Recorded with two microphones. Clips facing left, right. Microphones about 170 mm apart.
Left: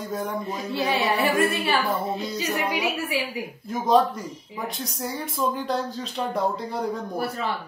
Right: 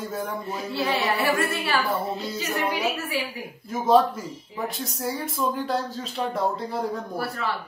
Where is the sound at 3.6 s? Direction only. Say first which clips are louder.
Right 1 dB; centre (ahead or behind).